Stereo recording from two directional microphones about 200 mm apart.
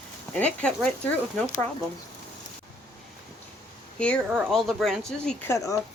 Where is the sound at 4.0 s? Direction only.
5° left (ahead or behind).